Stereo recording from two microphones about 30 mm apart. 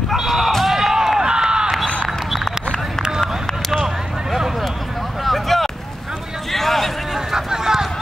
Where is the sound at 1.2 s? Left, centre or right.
Right.